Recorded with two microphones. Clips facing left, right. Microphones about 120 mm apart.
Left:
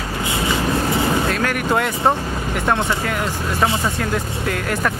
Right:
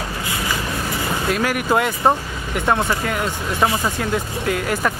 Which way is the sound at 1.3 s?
5° right (ahead or behind).